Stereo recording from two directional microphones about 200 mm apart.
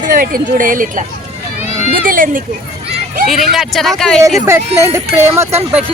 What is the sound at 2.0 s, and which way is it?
Speech, 45° right (ahead or behind).